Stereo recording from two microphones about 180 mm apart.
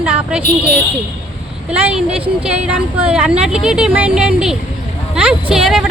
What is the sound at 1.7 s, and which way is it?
Speech, 5° right (ahead or behind).